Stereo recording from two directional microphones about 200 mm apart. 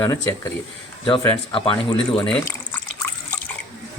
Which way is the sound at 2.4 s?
10° left (ahead or behind).